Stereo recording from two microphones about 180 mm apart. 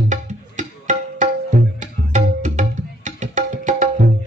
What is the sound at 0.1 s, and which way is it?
Music, 40° right (ahead or behind).